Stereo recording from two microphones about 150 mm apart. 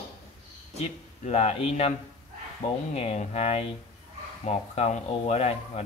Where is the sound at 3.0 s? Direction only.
45° left (ahead or behind).